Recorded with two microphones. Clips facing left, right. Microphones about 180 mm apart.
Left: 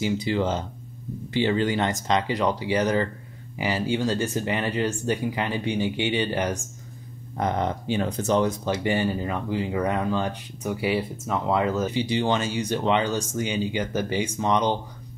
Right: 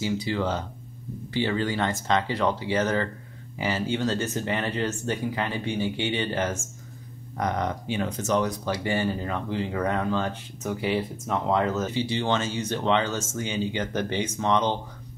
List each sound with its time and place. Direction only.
0.0 s speech: 20° left (ahead or behind)
7.3 s speech: 25° left (ahead or behind)